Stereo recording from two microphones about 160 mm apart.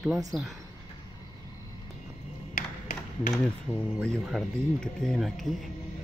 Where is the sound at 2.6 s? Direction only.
50° left (ahead or behind).